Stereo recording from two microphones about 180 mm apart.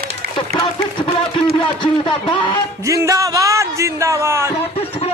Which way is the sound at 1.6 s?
25° left (ahead or behind).